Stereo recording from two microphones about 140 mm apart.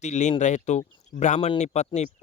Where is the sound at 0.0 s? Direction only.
55° left (ahead or behind).